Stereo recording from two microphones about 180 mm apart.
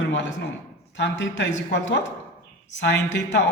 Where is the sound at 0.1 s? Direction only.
85° left.